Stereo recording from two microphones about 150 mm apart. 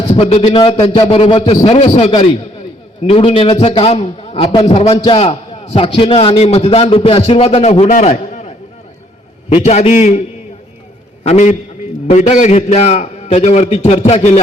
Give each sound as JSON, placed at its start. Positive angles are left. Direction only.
{"t": 0.1, "sound": "a man's voice", "side_deg": 40}